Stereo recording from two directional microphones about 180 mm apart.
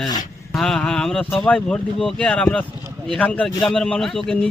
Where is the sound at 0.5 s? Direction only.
5° left (ahead or behind).